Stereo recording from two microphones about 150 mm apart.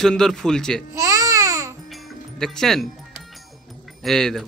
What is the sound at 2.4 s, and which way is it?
Speech, 5° left (ahead or behind).